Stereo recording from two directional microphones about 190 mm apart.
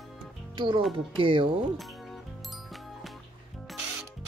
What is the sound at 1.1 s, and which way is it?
Speech, 25° right (ahead or behind).